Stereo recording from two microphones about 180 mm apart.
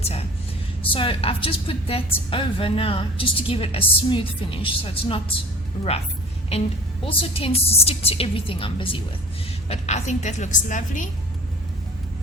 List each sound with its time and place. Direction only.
0.0 s a woman's voice: 35° left (ahead or behind)
7.0 s a woman's voice: 30° left (ahead or behind)